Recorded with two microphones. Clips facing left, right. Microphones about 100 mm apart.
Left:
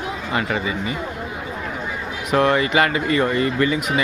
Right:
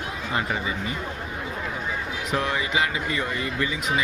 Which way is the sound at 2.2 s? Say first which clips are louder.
Left 10 dB; 60° left (ahead or behind).